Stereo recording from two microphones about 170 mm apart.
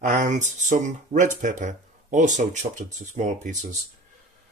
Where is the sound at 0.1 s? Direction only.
45° right (ahead or behind).